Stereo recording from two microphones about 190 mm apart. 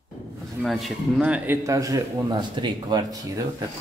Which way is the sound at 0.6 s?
Centre (ahead or behind).